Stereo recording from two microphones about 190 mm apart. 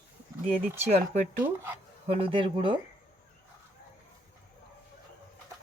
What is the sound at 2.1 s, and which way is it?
Speech, 30° right (ahead or behind).